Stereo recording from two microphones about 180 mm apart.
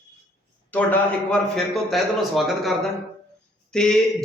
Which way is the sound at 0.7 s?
10° left (ahead or behind).